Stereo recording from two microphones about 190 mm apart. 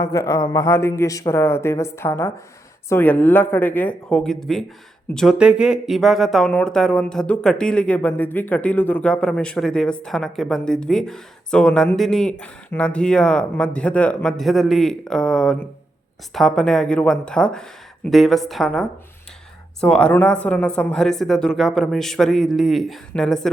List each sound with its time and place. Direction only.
0.0 s a man's voice: 20° left (ahead or behind); by 23.5 s centre (ahead or behind)